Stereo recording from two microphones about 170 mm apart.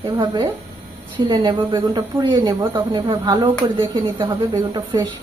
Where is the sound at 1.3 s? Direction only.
30° right (ahead or behind).